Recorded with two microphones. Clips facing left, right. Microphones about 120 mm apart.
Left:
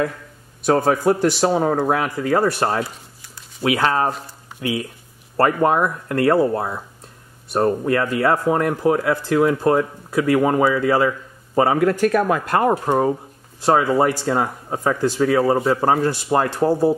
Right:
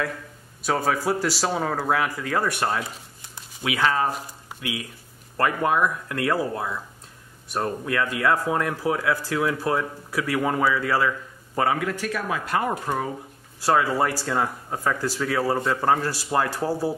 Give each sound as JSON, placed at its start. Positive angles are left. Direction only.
{"t": 0.8, "sound": "speech", "side_deg": 25}
{"t": 10.1, "sound": "speech", "side_deg": 25}
{"t": 11.1, "sound": "a sound", "side_deg": 35}
{"t": 11.8, "sound": "speech", "side_deg": 50}
{"t": 13.6, "sound": "speech", "side_deg": 20}